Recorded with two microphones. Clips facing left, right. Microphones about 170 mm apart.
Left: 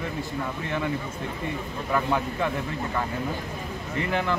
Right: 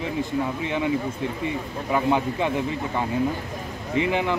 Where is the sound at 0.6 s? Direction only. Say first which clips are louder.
Right 3 dB; 15° right (ahead or behind).